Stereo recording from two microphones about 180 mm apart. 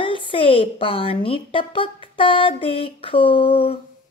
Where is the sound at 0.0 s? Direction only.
30° left (ahead or behind).